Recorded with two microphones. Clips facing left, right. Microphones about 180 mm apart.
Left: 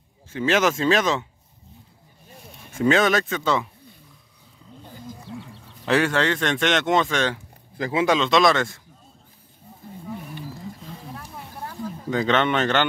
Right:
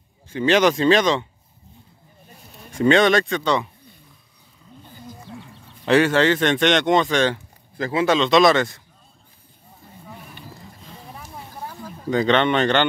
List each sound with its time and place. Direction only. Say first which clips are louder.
0.3 s speech: right 4 dB; centre (ahead or behind)
2.5 s speech: right 3 dB; 5° left (ahead or behind)
5.9 s speech: right 4 dB; centre (ahead or behind)
7.7 s speech: right 1 dB; 15° left (ahead or behind)
8.2 s speech: right 3 dB; centre (ahead or behind)
11.1 s a sound: right 1 dB; 10° right (ahead or behind)
12.1 s speech: right 3 dB; 5° left (ahead or behind)